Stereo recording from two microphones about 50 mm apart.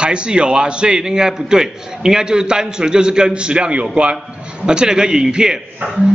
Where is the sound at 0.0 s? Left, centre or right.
Centre.